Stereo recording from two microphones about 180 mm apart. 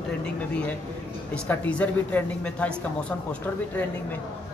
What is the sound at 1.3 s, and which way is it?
A woman's voice, 10° left (ahead or behind).